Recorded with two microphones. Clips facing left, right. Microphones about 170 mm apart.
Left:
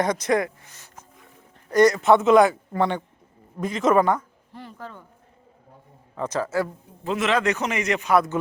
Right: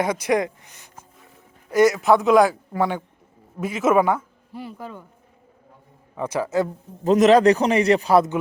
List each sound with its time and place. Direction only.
0.0 s speech: 10° right (ahead or behind)
1.7 s a man's voice: 5° right (ahead or behind)
6.1 s a man's voice: 10° right (ahead or behind)
7.0 s a man's voice: 40° right (ahead or behind)